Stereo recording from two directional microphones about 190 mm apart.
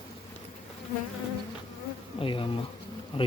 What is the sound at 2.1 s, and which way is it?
Bee, 25° left (ahead or behind).